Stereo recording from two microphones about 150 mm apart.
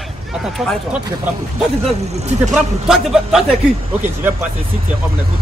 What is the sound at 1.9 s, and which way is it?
Speech, 45° right (ahead or behind).